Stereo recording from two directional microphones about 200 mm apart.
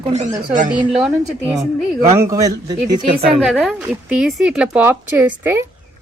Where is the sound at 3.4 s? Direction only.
Centre (ahead or behind).